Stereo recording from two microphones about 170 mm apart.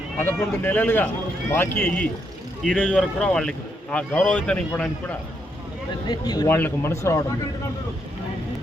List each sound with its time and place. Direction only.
0.2 s a man's voice: 10° left (ahead or behind)
6.1 s a man's voice: 25° left (ahead or behind)